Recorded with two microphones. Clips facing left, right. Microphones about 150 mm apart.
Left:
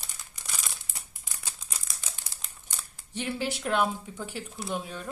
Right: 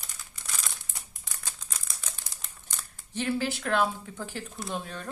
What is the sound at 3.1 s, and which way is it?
Speech, 15° left (ahead or behind).